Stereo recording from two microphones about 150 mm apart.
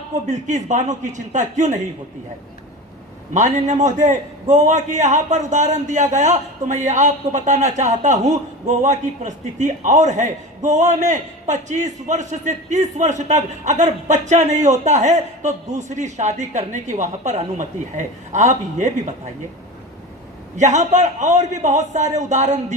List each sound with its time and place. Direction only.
0.3 s a man's voice: 55° right (ahead or behind)
3.3 s a man's voice: 50° right (ahead or behind)
20.6 s a man's voice: 50° right (ahead or behind)